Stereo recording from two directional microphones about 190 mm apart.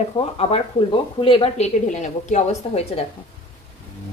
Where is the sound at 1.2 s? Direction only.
30° left (ahead or behind).